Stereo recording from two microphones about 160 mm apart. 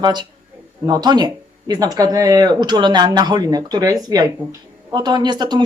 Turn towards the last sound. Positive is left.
turn(degrees=-25)  # may be behind; listen again after turning